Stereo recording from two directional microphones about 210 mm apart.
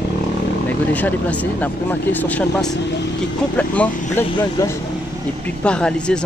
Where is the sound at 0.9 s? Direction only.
5° left (ahead or behind).